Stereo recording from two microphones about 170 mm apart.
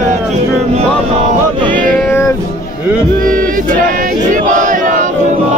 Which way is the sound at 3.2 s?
55° right (ahead or behind).